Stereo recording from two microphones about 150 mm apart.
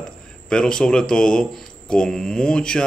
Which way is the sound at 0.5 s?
5° left (ahead or behind).